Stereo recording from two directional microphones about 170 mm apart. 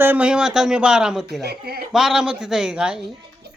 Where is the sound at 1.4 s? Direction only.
65° right (ahead or behind).